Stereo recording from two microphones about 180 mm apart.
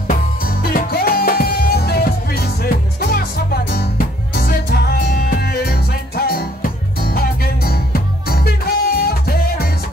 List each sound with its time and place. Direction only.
0.1 s music: 55° left (ahead or behind)